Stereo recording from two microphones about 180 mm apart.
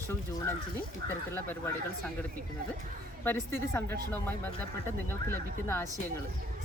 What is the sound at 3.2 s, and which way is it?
Speech, 10° left (ahead or behind).